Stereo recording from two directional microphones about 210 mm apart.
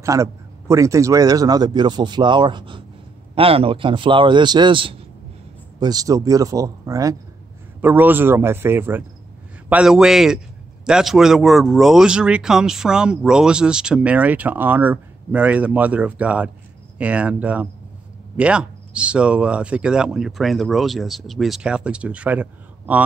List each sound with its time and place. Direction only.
0.0 s a man's voice: 15° right (ahead or behind)